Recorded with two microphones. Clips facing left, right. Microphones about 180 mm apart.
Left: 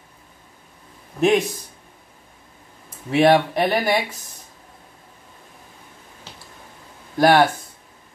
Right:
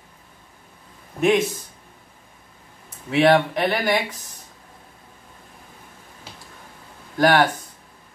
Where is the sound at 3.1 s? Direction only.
40° left (ahead or behind).